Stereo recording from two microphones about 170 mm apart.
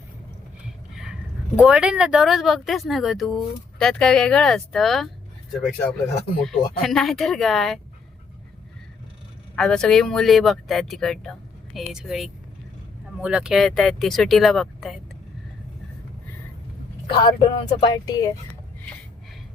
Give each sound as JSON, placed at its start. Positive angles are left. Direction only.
{"t": 1.5, "sound": "speech", "side_deg": -5}
{"t": 6.4, "sound": "speech", "side_deg": 0}
{"t": 9.6, "sound": "speech", "side_deg": 5}
{"t": 17.1, "sound": "speech", "side_deg": 25}